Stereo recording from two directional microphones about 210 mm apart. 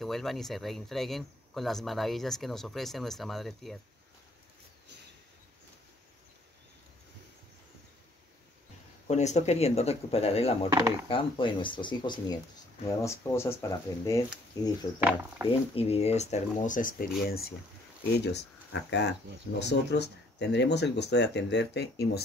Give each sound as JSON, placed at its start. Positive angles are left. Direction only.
{"t": 0.0, "sound": "speech", "side_deg": 0}
{"t": 9.0, "sound": "speech", "side_deg": 35}
{"t": 15.0, "sound": "speech", "side_deg": -5}
{"t": 15.7, "sound": "speech", "side_deg": 30}